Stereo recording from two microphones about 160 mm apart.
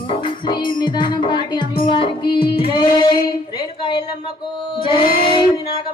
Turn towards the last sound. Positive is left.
turn(degrees=35)  # may be behind; listen again after turning